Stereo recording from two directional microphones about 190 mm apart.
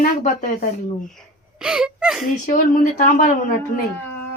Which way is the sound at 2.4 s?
45° left (ahead or behind).